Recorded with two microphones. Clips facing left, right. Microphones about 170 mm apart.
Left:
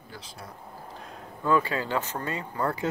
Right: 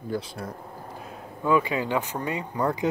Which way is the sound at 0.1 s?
55° right (ahead or behind).